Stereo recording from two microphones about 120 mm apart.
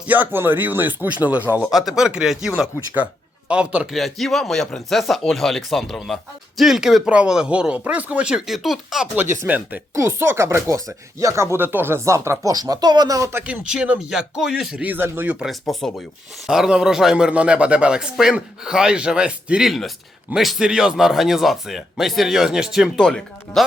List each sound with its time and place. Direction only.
0.0 s a man's voice: 15° right (ahead or behind)
1.6 s a man's voice: centre (ahead or behind)
3.9 s speech: centre (ahead or behind)
9.3 s a man's voice: 15° right (ahead or behind)
13.4 s a man's voice: 10° right (ahead or behind)
14.8 s a man's voice: 15° right (ahead or behind)
15.4 s a man's voice: centre (ahead or behind)